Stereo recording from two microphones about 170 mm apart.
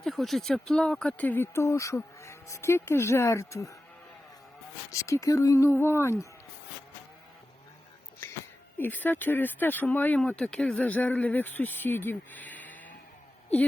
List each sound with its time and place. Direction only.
0.0 s speech: centre (ahead or behind); by 3.8 s 20° left (ahead or behind)
4.9 s speech: 20° left (ahead or behind)
8.8 s speech: 10° left (ahead or behind)